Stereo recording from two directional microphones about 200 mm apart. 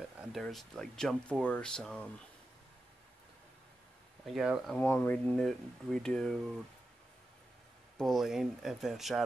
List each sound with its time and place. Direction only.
0.2 s speech: centre (ahead or behind)
4.3 s speech: centre (ahead or behind)
4.7 s speech: 10° left (ahead or behind)
8.0 s speech: centre (ahead or behind)